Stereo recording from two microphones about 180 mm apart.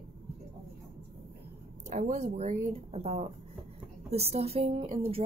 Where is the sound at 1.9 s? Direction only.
40° right (ahead or behind).